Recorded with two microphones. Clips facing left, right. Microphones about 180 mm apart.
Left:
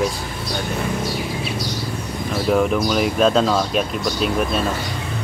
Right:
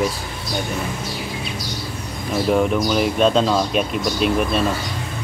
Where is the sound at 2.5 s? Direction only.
Centre (ahead or behind).